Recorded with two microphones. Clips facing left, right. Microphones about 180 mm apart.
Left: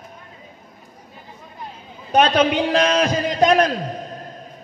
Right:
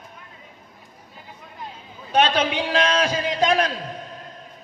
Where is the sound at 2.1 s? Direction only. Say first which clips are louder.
Left 4 dB; 40° left (ahead or behind).